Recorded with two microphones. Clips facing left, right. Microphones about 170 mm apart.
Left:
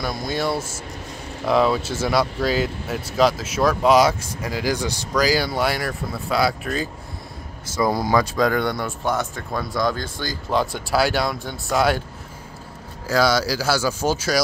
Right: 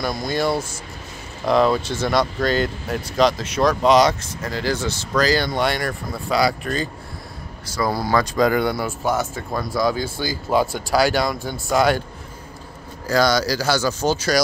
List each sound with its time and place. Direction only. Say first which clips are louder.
0.0 s speech: right 2 dB; centre (ahead or behind)
7.7 s speech: left 1 dB; 20° left (ahead or behind)
8.4 s speech: right 2 dB; 5° right (ahead or behind)
13.0 s speech: right 1 dB; 5° left (ahead or behind)